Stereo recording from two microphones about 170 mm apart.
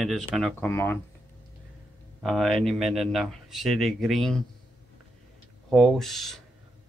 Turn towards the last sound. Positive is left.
turn(degrees=0)  # may be behind; listen again after turning